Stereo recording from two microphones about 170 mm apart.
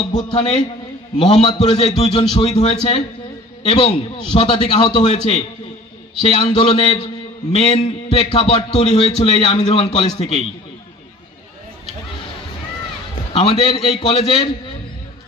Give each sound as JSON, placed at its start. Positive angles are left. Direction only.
{"t": 0.1, "sound": "a man's voice", "side_deg": 30}
{"t": 13.3, "sound": "a man's voice", "side_deg": 35}